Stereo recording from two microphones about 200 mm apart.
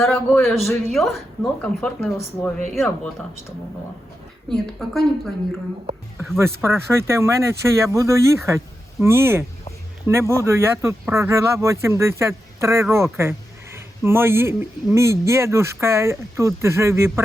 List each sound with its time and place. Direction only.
0.0 s speech: 10° left (ahead or behind)
0.4 s a woman's voice: centre (ahead or behind)
4.4 s a woman's voice: centre (ahead or behind)
6.3 s speech: 10° right (ahead or behind)